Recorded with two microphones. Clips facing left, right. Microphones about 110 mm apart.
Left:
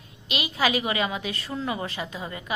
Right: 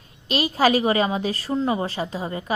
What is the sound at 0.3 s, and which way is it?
A woman's voice, 40° right (ahead or behind).